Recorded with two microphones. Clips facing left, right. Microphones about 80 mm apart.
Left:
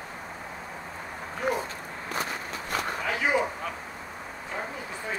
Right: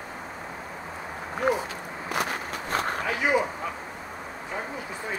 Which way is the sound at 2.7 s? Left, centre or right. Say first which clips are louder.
Right 3 dB; right.